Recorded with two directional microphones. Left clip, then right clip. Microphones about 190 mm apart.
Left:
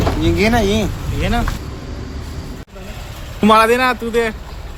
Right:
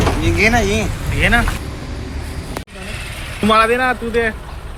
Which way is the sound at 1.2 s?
Centre (ahead or behind).